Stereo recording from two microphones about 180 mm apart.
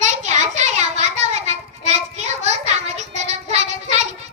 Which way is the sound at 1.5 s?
40° right (ahead or behind).